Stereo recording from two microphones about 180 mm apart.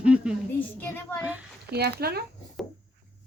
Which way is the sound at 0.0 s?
5° right (ahead or behind).